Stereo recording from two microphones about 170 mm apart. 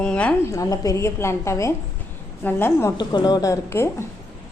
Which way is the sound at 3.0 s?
25° left (ahead or behind).